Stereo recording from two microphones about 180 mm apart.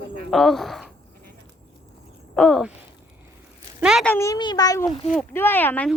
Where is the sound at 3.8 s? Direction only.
5° right (ahead or behind).